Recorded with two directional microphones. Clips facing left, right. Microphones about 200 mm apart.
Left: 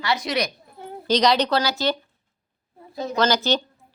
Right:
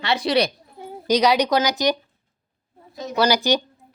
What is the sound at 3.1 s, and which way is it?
Speech, 10° right (ahead or behind).